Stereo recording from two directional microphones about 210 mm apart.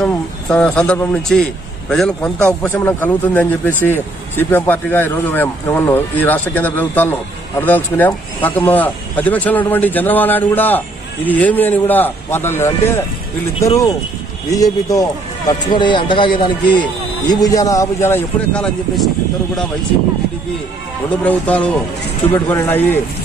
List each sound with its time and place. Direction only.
0.0 s a man's voice: 5° left (ahead or behind)
21.2 s a man's voice: 5° left (ahead or behind)